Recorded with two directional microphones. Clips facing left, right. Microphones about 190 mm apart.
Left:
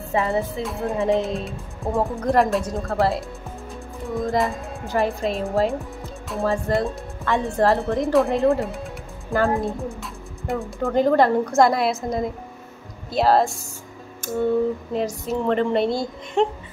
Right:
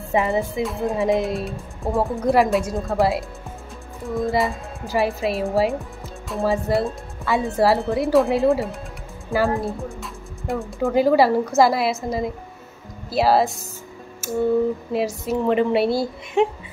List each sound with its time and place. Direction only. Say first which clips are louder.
0.1 s a woman's voice: right 2 dB; 15° right (ahead or behind)
0.7 s speech: right 2 dB; centre (ahead or behind)
0.9 s a woman's voice: even; 15° right (ahead or behind)
1.4 s speech: right 2 dB; centre (ahead or behind)
2.1 s a woman's voice: right 2 dB; 10° right (ahead or behind)
2.4 s speech: right 2 dB; centre (ahead or behind)
2.9 s a woman's voice: right 1 dB; 15° right (ahead or behind)
4.1 s a woman's voice: right 1 dB; centre (ahead or behind)
14.2 s music: right 1 dB; 5° right (ahead or behind)
14.9 s a woman's voice: right 2 dB; 10° right (ahead or behind)